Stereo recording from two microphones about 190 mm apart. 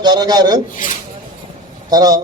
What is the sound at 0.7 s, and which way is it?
Speech, 40° left (ahead or behind).